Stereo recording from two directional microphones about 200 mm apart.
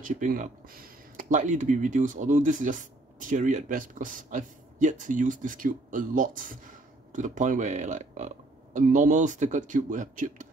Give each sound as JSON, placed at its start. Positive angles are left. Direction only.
{"t": 0.0, "sound": "speech", "side_deg": -40}